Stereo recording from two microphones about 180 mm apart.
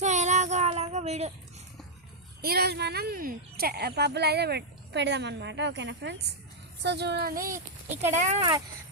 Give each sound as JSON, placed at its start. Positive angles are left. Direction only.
{"t": 0.0, "sound": "child singing", "side_deg": -40}
{"t": 2.4, "sound": "speech", "side_deg": -60}
{"t": 8.1, "sound": "speech", "side_deg": -40}